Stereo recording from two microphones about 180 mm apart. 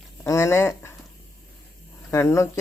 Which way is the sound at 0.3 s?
15° left (ahead or behind).